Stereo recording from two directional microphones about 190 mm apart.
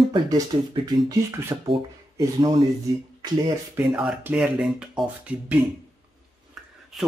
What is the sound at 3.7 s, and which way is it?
Speech, 5° right (ahead or behind).